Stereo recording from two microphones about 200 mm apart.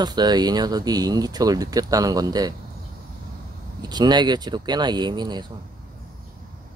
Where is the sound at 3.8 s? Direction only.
20° right (ahead or behind).